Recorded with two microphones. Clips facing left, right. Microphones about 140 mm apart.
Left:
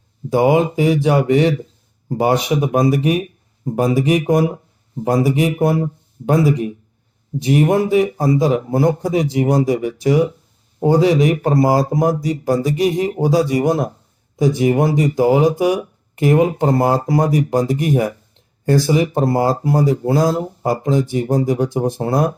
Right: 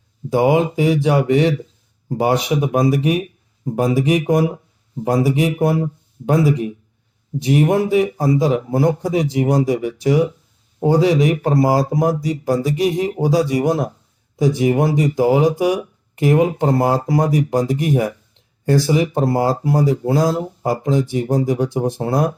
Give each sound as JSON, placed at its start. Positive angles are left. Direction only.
{"t": 0.3, "sound": "speech", "side_deg": 45}